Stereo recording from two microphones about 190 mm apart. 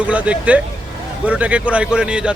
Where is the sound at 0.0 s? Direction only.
5° right (ahead or behind).